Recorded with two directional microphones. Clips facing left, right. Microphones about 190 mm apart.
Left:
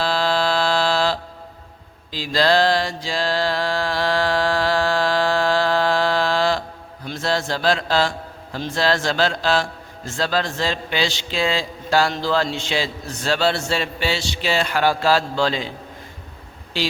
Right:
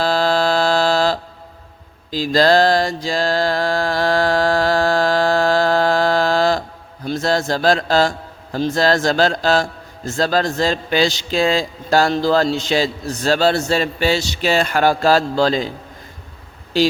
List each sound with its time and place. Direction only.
0.0 s a sound: 45° right (ahead or behind)
2.0 s mantra: 45° right (ahead or behind)
7.0 s a man's voice: 40° right (ahead or behind)
16.7 s speech: 40° right (ahead or behind)